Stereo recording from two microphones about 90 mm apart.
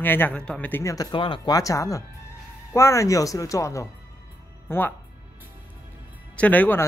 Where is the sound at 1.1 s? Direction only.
65° left (ahead or behind).